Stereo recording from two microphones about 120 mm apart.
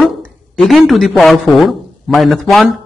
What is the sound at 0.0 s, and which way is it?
Speech, centre (ahead or behind).